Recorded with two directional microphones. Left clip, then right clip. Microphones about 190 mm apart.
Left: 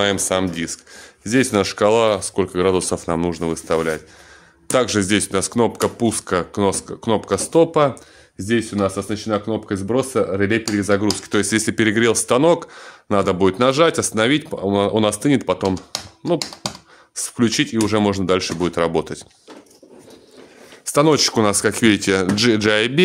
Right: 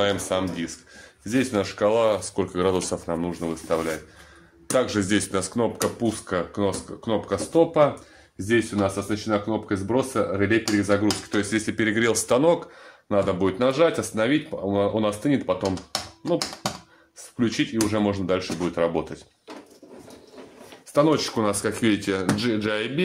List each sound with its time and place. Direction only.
0.0 s speech: 65° left (ahead or behind); by 3.0 s 40° left (ahead or behind)
3.1 s speech: 65° left (ahead or behind); by 5.7 s 45° left (ahead or behind)
5.8 s speech: 65° left (ahead or behind)
8.5 s speech: 50° left (ahead or behind)
17.1 s speech: 65° left (ahead or behind)
20.8 s speech: 65° left (ahead or behind)